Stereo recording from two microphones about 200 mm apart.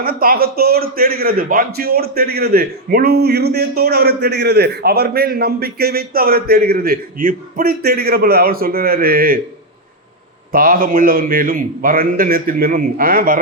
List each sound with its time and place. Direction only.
0.0 s a man's voice: 50° right (ahead or behind)
10.5 s a man's voice: 45° right (ahead or behind)